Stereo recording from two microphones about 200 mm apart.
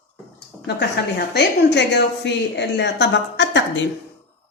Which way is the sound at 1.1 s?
55° left (ahead or behind).